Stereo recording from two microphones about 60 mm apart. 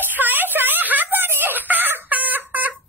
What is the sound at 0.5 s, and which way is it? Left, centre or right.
Wail, right.